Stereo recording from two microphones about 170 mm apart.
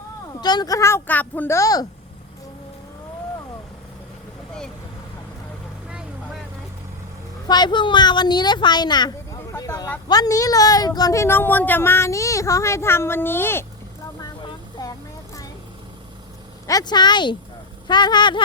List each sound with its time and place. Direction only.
0.4 s speech: 25° left (ahead or behind)
7.4 s a woman's voice: 25° left (ahead or behind)
14.2 s vehicle: 20° left (ahead or behind)
16.6 s a woman's voice: 25° left (ahead or behind)